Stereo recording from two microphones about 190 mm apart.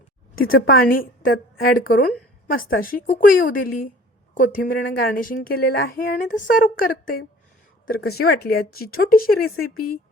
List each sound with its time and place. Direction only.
0.3 s speech: 50° left (ahead or behind)